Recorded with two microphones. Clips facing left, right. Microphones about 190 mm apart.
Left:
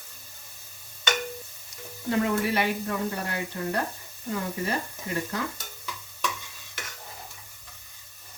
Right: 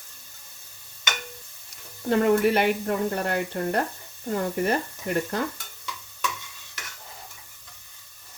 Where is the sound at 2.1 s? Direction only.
55° right (ahead or behind).